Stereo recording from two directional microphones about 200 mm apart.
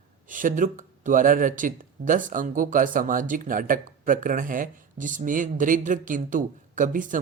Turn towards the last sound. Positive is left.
turn(degrees=-40)  # may be behind; listen again after turning